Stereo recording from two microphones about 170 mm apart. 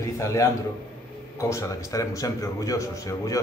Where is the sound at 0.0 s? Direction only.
20° left (ahead or behind).